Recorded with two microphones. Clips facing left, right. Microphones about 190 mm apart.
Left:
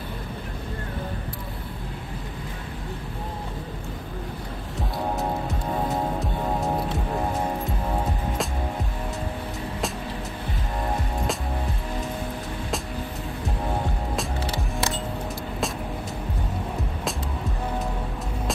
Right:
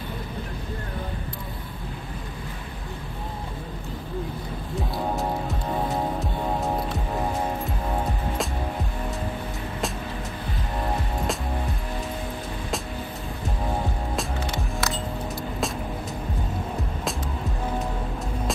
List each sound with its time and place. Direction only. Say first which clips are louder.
4.9 s music: left 1 dB; centre (ahead or behind)
14.4 s music: left 1 dB; 35° left (ahead or behind)